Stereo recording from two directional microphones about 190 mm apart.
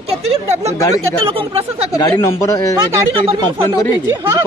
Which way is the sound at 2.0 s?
15° left (ahead or behind).